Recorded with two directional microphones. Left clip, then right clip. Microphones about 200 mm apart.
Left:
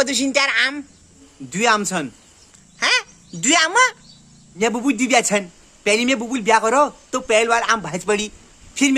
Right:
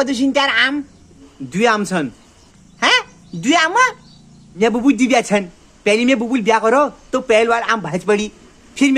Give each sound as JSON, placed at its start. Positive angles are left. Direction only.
{"t": 0.0, "sound": "a woman's voice", "side_deg": 20}
{"t": 1.5, "sound": "a man's voice", "side_deg": 5}
{"t": 2.8, "sound": "a sound", "side_deg": 20}
{"t": 4.6, "sound": "a man's voice", "side_deg": 0}